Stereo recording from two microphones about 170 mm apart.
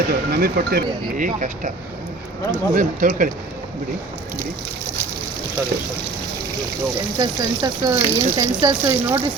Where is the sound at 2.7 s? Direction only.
50° right (ahead or behind).